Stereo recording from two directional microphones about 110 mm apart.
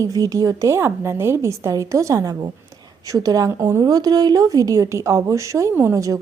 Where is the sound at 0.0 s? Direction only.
30° right (ahead or behind).